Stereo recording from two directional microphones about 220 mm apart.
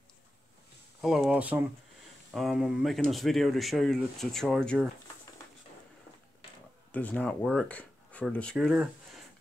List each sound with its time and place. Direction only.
1.0 s speech: 5° right (ahead or behind)
6.9 s speech: 5° left (ahead or behind)